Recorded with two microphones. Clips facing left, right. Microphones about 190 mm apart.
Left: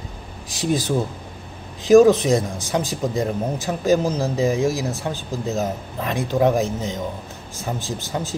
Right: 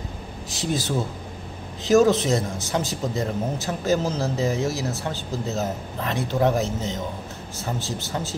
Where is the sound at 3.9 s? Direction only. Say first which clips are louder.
Left 4 dB; 15° left (ahead or behind).